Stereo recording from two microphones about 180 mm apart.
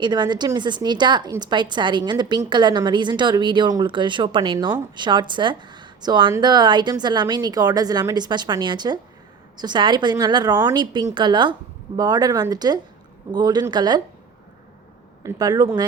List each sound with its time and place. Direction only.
0.0 s a woman's voice: 25° right (ahead or behind)
15.2 s a woman's voice: 20° right (ahead or behind)